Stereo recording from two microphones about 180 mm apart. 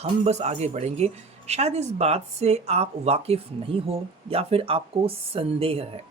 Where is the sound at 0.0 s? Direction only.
40° right (ahead or behind).